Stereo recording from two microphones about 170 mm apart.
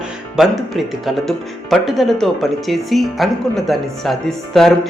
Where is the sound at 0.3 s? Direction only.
Centre (ahead or behind).